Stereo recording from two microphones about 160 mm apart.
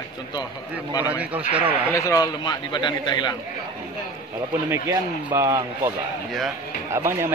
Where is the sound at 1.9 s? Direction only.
20° left (ahead or behind).